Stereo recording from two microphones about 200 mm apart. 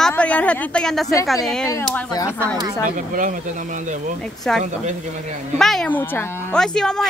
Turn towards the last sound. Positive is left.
turn(degrees=5)  # may be behind; listen again after turning